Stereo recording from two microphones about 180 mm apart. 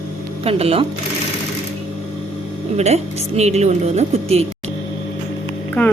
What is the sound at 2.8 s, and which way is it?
Speech, 35° right (ahead or behind).